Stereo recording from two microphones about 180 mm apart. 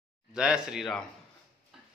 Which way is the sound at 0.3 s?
5° right (ahead or behind).